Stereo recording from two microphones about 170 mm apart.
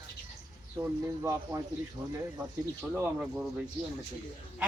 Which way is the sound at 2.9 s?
5° right (ahead or behind).